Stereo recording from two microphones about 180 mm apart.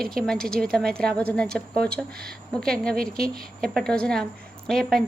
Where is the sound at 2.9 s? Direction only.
55° right (ahead or behind).